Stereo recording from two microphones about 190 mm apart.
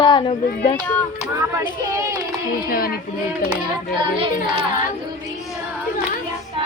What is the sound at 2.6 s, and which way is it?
Speech, 50° left (ahead or behind).